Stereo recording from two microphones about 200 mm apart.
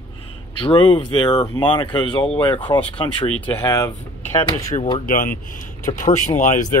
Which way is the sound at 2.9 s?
25° left (ahead or behind).